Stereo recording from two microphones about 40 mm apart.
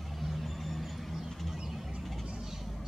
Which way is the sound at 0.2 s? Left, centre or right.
Centre.